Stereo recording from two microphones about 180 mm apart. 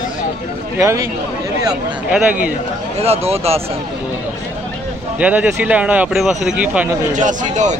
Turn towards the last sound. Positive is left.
turn(degrees=-45)  # may be behind; listen again after turning